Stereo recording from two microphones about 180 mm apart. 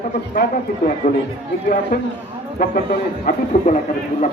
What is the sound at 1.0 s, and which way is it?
Speech, 45° left (ahead or behind).